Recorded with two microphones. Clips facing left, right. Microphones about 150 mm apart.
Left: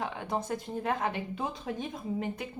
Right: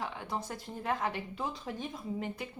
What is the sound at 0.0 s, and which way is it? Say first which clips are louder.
Speech: left 4 dB; 20° left (ahead or behind).